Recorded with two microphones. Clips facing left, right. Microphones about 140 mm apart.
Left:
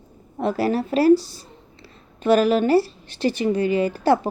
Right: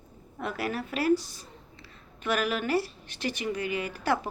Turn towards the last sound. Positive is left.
turn(degrees=30)  # may be behind; listen again after turning